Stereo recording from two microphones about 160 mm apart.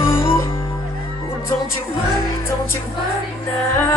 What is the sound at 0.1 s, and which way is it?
Music, 15° left (ahead or behind).